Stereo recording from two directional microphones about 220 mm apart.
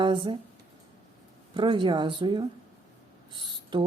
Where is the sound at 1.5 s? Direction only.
20° right (ahead or behind).